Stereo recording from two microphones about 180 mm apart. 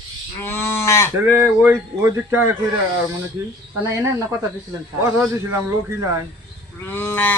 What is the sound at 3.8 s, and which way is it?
Speech, 15° right (ahead or behind).